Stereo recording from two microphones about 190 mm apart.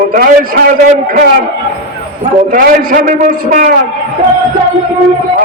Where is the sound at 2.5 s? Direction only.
45° right (ahead or behind).